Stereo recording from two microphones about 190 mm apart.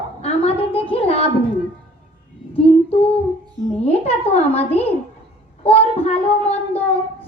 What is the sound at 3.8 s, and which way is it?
A child's voice, 35° left (ahead or behind).